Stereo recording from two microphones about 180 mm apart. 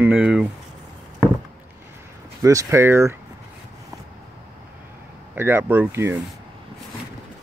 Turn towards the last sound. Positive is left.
turn(degrees=-15)  # may be behind; listen again after turning